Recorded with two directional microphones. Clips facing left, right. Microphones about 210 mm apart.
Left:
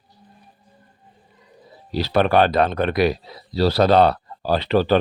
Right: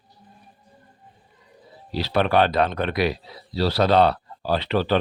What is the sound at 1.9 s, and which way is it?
Speech, 45° left (ahead or behind).